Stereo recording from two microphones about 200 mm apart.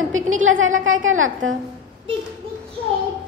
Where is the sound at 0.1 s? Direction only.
85° right.